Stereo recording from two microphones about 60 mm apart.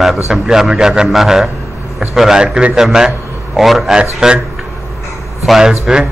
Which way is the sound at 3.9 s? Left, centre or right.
Centre.